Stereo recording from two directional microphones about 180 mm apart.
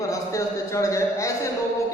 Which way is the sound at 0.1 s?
15° left (ahead or behind).